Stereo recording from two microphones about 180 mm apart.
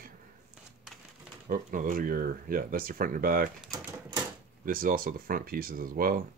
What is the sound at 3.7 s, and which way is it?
Typewriter, 20° right (ahead or behind).